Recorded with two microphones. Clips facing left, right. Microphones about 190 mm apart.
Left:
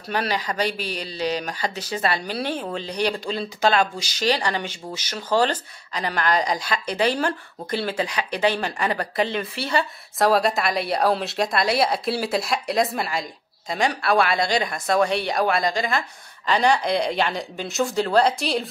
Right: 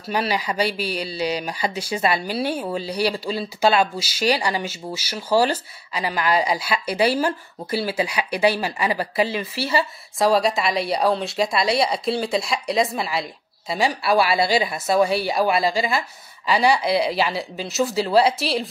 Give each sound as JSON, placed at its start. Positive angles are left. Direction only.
{"t": 0.1, "sound": "speech", "side_deg": -10}